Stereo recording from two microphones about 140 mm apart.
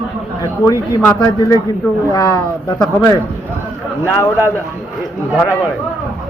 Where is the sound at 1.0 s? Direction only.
20° left (ahead or behind).